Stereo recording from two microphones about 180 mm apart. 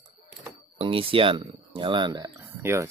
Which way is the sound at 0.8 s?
30° right (ahead or behind).